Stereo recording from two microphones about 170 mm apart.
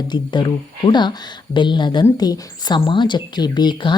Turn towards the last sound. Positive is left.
turn(degrees=25)  # may be behind; listen again after turning